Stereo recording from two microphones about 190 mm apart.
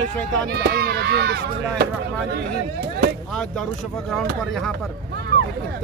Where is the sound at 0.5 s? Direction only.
55° right (ahead or behind).